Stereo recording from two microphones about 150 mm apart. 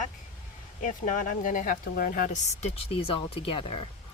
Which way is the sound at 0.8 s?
60° left (ahead or behind).